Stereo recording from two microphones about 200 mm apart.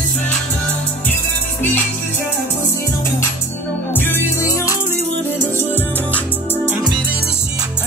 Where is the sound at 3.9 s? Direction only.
10° left (ahead or behind).